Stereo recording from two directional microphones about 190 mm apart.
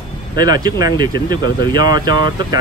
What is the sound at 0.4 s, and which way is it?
Speech, 20° right (ahead or behind).